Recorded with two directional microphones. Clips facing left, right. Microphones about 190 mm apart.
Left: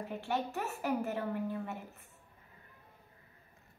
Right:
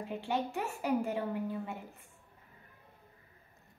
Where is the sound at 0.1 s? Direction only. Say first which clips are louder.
Right 2 dB; 15° right (ahead or behind).